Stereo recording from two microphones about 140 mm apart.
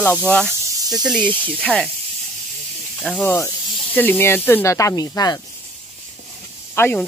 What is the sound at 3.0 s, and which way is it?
Speech, 5° left (ahead or behind).